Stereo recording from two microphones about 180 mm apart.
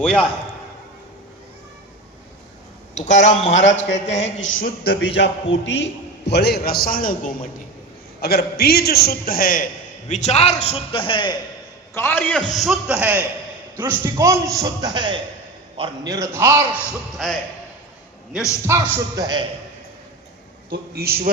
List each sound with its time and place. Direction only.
0.0 s a man's voice: 5° left (ahead or behind)
3.0 s a man's voice: 40° left (ahead or behind)
3.8 s a man's voice: 80° left
4.0 s a man's voice: 40° left (ahead or behind)
4.4 s a man's voice: 90° left
4.6 s a man's voice: 65° left (ahead or behind); by 7.3 s 50° left (ahead or behind)
8.2 s a man's voice: 60° left (ahead or behind)
10.1 s a man's voice: 40° left (ahead or behind)
11.9 s a man's voice: 10° left (ahead or behind)
12.5 s a man's voice: 5° right (ahead or behind)
17.2 s a man's voice: centre (ahead or behind)
18.7 s a man's voice: 15° right (ahead or behind)
20.9 s a man's voice: 60° right (ahead or behind)